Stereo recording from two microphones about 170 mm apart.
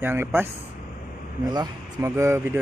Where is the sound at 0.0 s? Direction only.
15° right (ahead or behind).